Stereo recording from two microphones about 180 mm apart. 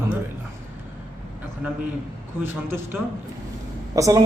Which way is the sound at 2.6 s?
10° right (ahead or behind).